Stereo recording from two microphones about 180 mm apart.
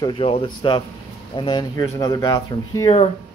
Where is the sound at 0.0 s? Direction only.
30° left (ahead or behind).